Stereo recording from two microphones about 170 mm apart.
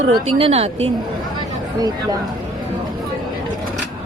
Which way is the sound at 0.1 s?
35° right (ahead or behind).